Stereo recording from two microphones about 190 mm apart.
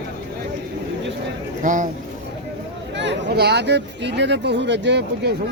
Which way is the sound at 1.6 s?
45° right (ahead or behind).